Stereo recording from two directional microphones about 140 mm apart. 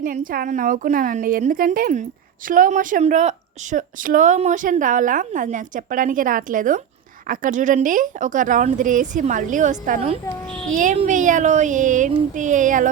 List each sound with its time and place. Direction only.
0.0 s a woman's voice: 80° right; by 3.0 s 65° right (ahead or behind)
3.0 s a woman's voice: 55° right (ahead or behind)